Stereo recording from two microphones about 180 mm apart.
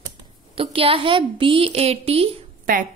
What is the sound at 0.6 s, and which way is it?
A woman's voice, 30° right (ahead or behind).